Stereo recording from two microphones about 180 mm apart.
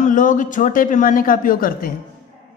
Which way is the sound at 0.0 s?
45° left (ahead or behind).